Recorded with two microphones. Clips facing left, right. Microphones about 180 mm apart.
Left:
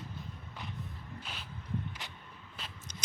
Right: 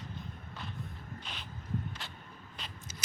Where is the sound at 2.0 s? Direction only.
15° left (ahead or behind).